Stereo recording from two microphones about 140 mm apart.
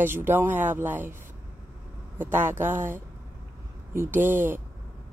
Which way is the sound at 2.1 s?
15° right (ahead or behind).